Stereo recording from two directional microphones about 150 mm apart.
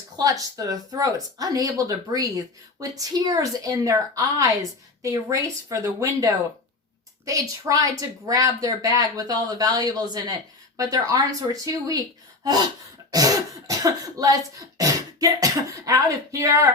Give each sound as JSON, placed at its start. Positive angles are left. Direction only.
{"t": 0.2, "sound": "speech", "side_deg": -25}
{"t": 13.1, "sound": "speech", "side_deg": -25}